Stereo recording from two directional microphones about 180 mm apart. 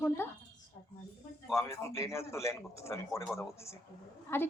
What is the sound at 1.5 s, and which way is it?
Speech, 15° left (ahead or behind).